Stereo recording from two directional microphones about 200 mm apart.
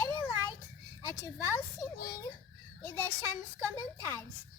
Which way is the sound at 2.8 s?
10° left (ahead or behind).